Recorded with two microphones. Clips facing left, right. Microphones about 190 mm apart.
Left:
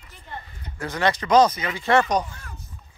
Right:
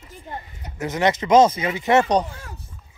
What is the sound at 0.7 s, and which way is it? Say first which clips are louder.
Speech: right 3 dB; 20° right (ahead or behind).